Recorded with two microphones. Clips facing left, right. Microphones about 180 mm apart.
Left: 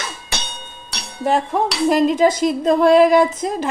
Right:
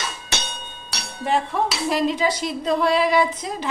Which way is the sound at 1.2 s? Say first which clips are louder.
Left 4 dB; 45° left (ahead or behind).